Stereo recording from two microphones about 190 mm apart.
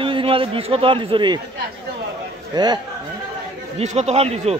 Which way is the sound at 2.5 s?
20° right (ahead or behind).